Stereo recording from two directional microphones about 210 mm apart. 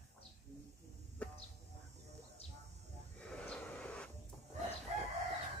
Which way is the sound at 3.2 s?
5° left (ahead or behind).